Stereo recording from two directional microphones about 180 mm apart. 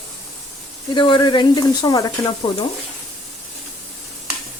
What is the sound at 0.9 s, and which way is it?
Speech, 25° left (ahead or behind).